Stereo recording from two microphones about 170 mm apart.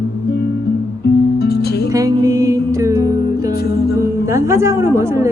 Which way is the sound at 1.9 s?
20° right (ahead or behind).